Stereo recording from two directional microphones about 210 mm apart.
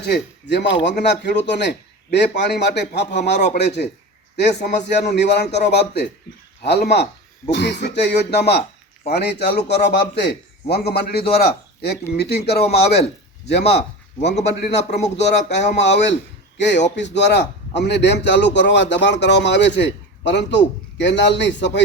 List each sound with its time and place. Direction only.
0.0 s speech: 55° left (ahead or behind)
4.7 s speech: 55° left (ahead or behind)